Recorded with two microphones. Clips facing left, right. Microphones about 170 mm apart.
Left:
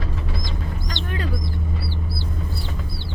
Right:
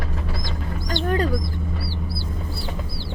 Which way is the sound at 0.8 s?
40° right (ahead or behind).